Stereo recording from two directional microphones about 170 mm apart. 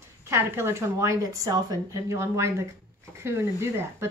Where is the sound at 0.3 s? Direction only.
15° right (ahead or behind).